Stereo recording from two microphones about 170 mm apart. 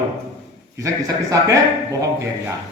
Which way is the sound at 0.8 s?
20° right (ahead or behind).